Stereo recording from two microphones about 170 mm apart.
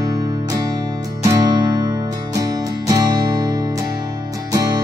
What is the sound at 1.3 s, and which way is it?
Music, 25° right (ahead or behind).